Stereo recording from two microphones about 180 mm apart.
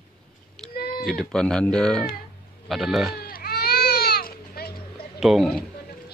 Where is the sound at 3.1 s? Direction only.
55° left (ahead or behind).